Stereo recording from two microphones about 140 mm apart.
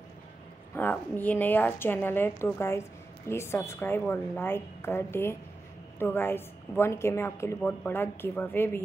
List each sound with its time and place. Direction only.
0.7 s a woman's voice: 10° left (ahead or behind)